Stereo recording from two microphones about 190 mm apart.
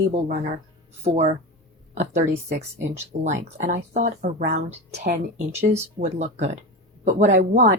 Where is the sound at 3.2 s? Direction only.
40° right (ahead or behind).